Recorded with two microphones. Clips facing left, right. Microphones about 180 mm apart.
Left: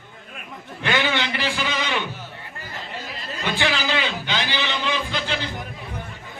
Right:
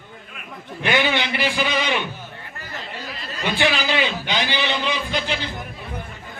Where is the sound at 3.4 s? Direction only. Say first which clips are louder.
Right 3 dB; 15° right (ahead or behind).